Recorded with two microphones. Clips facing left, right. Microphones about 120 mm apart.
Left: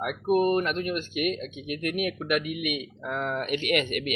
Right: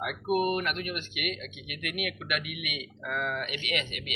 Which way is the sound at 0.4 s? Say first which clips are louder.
Left 5 dB; 35° left (ahead or behind).